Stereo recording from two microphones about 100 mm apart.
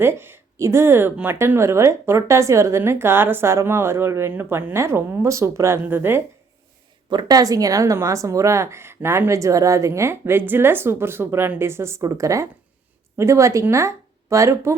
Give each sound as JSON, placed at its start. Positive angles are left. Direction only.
{"t": 0.0, "sound": "a woman's voice", "side_deg": -25}
{"t": 7.1, "sound": "a woman's voice", "side_deg": -45}